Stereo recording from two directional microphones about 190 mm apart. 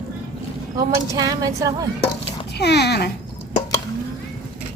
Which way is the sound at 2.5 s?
60° left (ahead or behind).